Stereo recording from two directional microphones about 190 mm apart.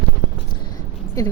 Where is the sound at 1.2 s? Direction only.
20° left (ahead or behind).